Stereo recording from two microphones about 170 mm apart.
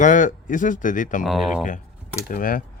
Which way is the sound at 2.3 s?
55° left (ahead or behind).